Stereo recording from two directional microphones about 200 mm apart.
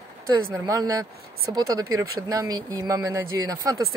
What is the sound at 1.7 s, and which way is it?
Speech, 90° right.